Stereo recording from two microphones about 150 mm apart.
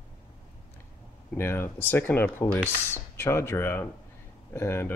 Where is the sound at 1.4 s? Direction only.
15° left (ahead or behind).